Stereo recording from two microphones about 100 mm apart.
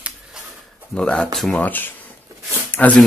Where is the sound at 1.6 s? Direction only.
20° left (ahead or behind).